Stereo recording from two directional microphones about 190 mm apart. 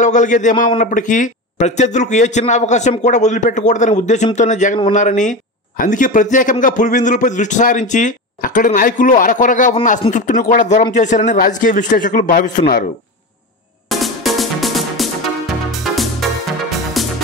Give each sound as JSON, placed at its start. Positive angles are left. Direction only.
{"t": 0.0, "sound": "a man's voice", "side_deg": 40}
{"t": 13.8, "sound": "music", "side_deg": 0}